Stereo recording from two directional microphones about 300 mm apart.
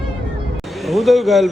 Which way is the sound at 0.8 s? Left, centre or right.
Centre.